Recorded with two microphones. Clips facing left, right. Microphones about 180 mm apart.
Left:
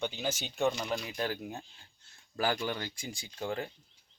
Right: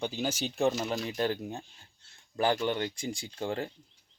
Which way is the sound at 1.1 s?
25° right (ahead or behind).